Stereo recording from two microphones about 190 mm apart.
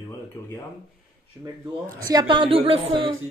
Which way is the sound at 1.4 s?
10° right (ahead or behind).